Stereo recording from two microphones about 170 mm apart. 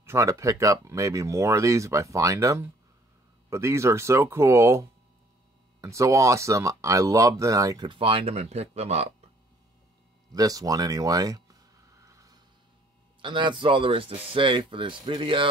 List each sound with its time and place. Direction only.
0.0 s speech: 15° right (ahead or behind); by 9.3 s 40° right (ahead or behind)
10.3 s speech: 20° right (ahead or behind)
12.0 s a sound: 20° right (ahead or behind)
13.2 s speech: 30° right (ahead or behind)